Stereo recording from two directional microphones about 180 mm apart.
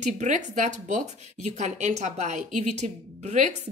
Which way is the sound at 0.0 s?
40° right (ahead or behind).